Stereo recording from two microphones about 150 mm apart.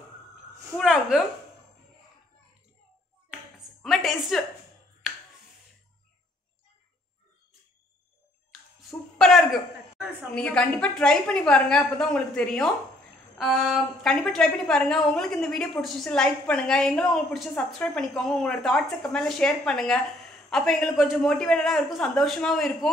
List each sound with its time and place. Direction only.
0.7 s a woman's voice: 5° right (ahead or behind)
3.8 s a woman's voice: centre (ahead or behind)
5.0 s finger snapping: centre (ahead or behind)
9.2 s a woman's voice: centre (ahead or behind)